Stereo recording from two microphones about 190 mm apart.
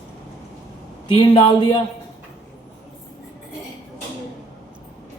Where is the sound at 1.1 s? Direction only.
25° left (ahead or behind).